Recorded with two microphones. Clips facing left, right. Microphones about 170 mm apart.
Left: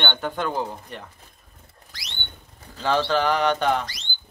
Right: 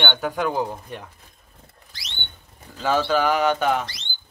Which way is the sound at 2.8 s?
5° right (ahead or behind).